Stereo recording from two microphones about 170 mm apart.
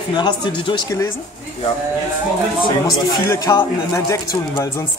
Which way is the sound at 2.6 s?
20° left (ahead or behind).